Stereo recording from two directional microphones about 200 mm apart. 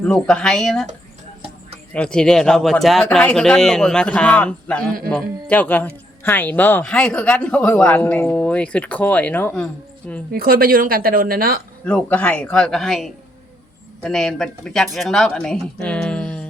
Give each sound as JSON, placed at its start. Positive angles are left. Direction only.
{"t": 0.0, "sound": "speech", "side_deg": 5}
{"t": 1.9, "sound": "speech", "side_deg": 5}
{"t": 10.3, "sound": "speech", "side_deg": -45}
{"t": 11.9, "sound": "speech", "side_deg": 10}